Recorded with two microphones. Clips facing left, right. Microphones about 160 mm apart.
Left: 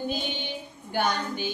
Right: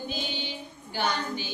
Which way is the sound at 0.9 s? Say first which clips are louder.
Left 2 dB; 50° left (ahead or behind).